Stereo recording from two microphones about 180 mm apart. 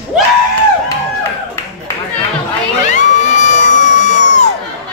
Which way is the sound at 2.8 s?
40° left (ahead or behind).